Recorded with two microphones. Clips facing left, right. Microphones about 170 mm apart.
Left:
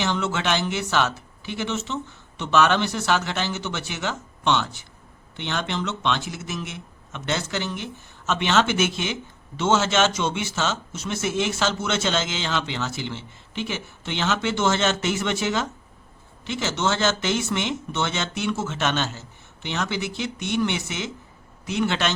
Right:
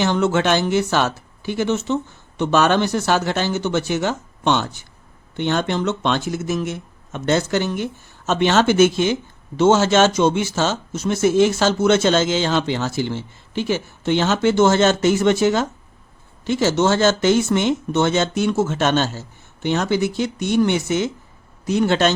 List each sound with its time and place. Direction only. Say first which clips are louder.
0.0 s speech: right 7 dB; 45° right (ahead or behind)